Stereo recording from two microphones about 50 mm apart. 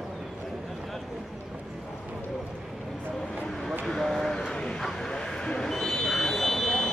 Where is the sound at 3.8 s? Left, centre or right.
Centre.